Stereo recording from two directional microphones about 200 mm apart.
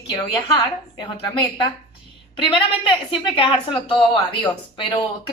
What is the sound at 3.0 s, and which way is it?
A woman's voice, 25° left (ahead or behind).